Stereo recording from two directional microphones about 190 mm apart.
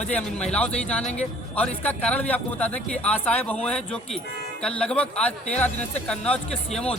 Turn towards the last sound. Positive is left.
turn(degrees=5)  # may be behind; listen again after turning